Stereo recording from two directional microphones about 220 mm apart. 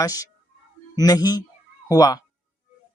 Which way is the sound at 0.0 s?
15° left (ahead or behind).